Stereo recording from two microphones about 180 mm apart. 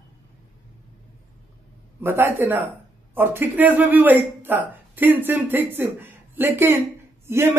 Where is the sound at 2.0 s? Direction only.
15° right (ahead or behind).